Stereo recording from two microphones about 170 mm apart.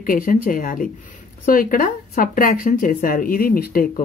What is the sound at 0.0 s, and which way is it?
Speech, 55° left (ahead or behind).